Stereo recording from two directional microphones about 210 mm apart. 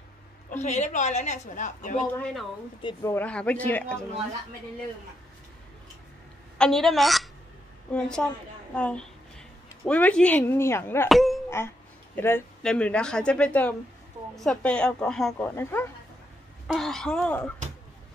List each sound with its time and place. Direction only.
0.5 s speech: 35° left (ahead or behind)
2.1 s speech: 5° left (ahead or behind)
2.8 s speech: 20° left (ahead or behind)
6.6 s speech: centre (ahead or behind)
11.1 s speech: centre (ahead or behind)
16.6 s speech: centre (ahead or behind)